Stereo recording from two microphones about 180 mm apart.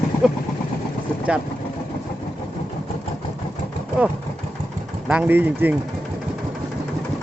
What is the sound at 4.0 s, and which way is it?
Speech, 5° right (ahead or behind).